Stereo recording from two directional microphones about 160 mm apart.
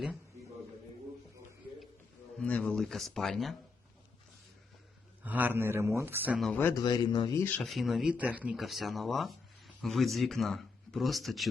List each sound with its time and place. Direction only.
2.4 s speech: 10° left (ahead or behind)
5.2 s a man's voice: 10° right (ahead or behind)
6.4 s speech: 10° left (ahead or behind)
6.7 s speech: 25° left (ahead or behind)
7.4 s speech: 5° left (ahead or behind)